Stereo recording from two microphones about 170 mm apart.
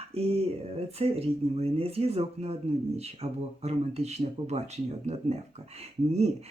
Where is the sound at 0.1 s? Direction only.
35° right (ahead or behind).